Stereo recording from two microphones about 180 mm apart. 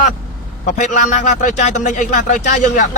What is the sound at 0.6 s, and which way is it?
A man's voice, 45° left (ahead or behind).